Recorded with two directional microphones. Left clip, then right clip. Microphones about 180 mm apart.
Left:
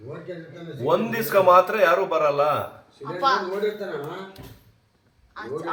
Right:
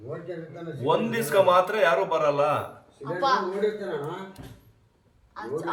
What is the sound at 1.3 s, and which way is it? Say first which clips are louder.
Speech: left 4 dB; 55° left (ahead or behind).